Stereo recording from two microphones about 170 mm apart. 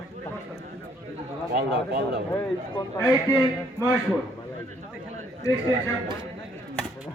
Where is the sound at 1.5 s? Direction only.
70° right (ahead or behind).